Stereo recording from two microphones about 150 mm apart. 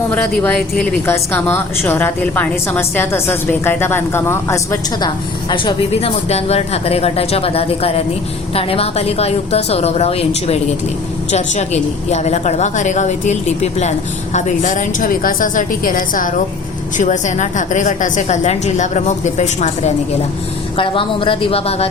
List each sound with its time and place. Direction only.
0.1 s a woman's voice: 10° left (ahead or behind); by 5.7 s 30° left (ahead or behind)
5.9 s a woman's voice: 45° left (ahead or behind); by 16.3 s 65° left (ahead or behind)
17.0 s a woman's voice: 55° left (ahead or behind)
20.7 s speech: 35° left (ahead or behind)